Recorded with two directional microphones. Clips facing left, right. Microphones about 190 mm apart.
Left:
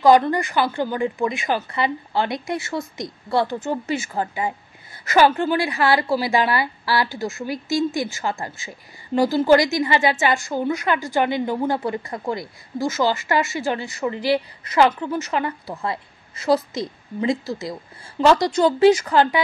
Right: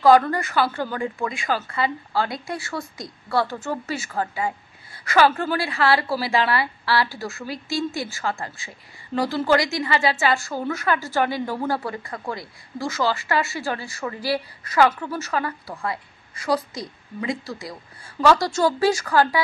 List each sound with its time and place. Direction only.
0.0 s a woman's voice: 20° left (ahead or behind)